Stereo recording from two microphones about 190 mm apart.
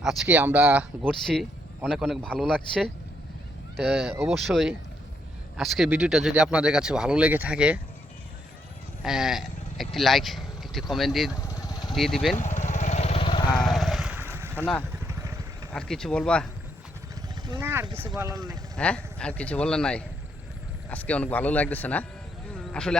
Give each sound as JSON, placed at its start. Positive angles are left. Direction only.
{"t": 0.0, "sound": "speech", "side_deg": -5}
{"t": 9.0, "sound": "speech", "side_deg": 0}
{"t": 11.3, "sound": "vehicle", "side_deg": 15}
{"t": 11.9, "sound": "speech", "side_deg": 0}
{"t": 12.4, "sound": "vehicle", "side_deg": 40}
{"t": 13.6, "sound": "boat", "side_deg": 0}
{"t": 14.5, "sound": "speech", "side_deg": 10}
{"t": 15.0, "sound": "vehicle", "side_deg": -15}
{"t": 15.7, "sound": "speech", "side_deg": 5}
{"t": 17.6, "sound": "speech", "side_deg": -10}
{"t": 18.8, "sound": "speech", "side_deg": 5}